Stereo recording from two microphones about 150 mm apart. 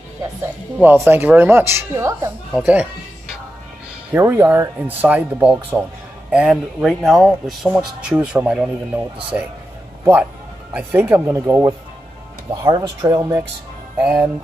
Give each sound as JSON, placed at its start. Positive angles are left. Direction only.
{"t": 0.7, "sound": "speech", "side_deg": -10}
{"t": 4.1, "sound": "speech", "side_deg": -20}
{"t": 10.7, "sound": "speech", "side_deg": -10}
{"t": 14.0, "sound": "speech", "side_deg": -5}